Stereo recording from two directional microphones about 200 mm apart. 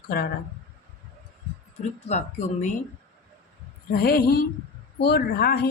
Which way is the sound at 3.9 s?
50° left (ahead or behind).